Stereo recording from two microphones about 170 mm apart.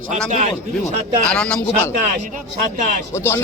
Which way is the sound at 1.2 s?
5° left (ahead or behind).